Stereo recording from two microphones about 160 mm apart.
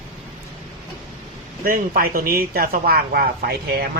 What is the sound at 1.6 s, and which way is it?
Speech, 60° right (ahead or behind).